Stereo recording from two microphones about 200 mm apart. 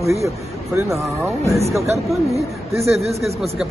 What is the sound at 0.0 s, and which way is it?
Speech, 15° right (ahead or behind).